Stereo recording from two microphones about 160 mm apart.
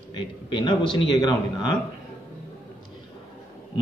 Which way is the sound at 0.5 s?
30° left (ahead or behind).